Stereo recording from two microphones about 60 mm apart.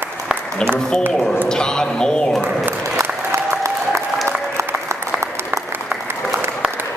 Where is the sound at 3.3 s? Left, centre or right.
Right.